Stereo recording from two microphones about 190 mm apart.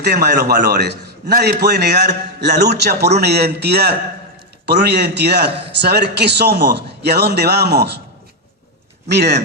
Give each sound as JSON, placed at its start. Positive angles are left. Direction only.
{"t": 0.0, "sound": "a man's voice", "side_deg": -55}
{"t": 9.0, "sound": "a man's voice", "side_deg": -60}